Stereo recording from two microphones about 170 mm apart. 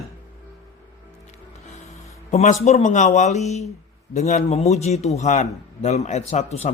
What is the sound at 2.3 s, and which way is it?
Speech, 45° left (ahead or behind).